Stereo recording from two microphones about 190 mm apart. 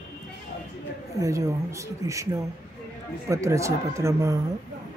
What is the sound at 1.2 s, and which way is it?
Speech, 15° right (ahead or behind).